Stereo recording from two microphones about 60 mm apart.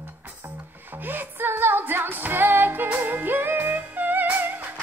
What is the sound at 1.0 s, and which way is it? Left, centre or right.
Music, right.